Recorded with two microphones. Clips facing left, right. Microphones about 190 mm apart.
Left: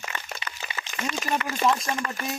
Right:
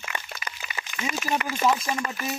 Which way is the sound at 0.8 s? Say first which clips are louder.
Right 3 dB; 25° right (ahead or behind).